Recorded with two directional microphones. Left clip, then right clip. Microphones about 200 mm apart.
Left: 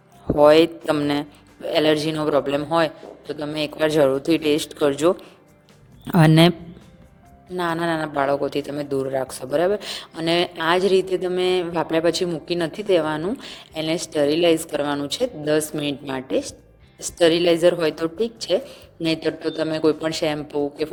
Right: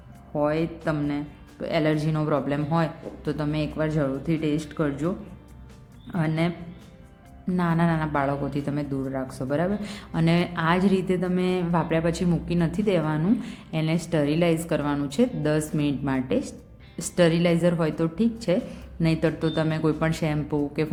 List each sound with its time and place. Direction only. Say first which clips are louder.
0.3 s speech: left 12 dB; 50° left (ahead or behind)
1.7 s speech: left 6 dB; 35° left (ahead or behind)
7.5 s speech: left 4 dB; 30° left (ahead or behind)